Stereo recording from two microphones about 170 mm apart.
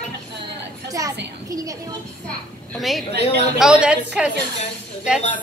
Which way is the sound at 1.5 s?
20° right (ahead or behind).